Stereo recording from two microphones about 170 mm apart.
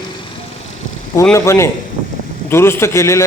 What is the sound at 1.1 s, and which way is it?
A man's voice, 15° left (ahead or behind).